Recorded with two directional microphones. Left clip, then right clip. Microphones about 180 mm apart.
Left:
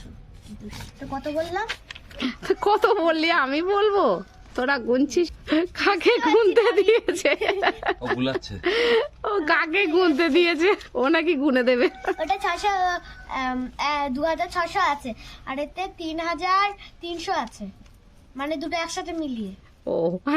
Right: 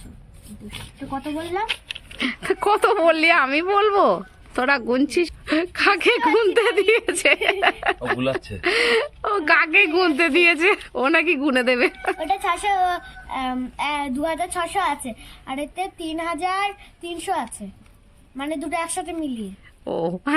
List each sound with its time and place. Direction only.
1.1 s speech: 30° left (ahead or behind)
2.1 s a woman's voice: centre (ahead or behind)
19.8 s a woman's voice: centre (ahead or behind)